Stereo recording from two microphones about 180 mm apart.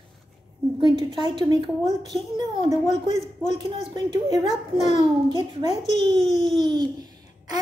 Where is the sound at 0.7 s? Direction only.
30° right (ahead or behind).